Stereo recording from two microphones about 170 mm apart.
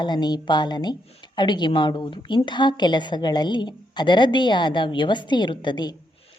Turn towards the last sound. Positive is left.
turn(degrees=25)  # may be behind; listen again after turning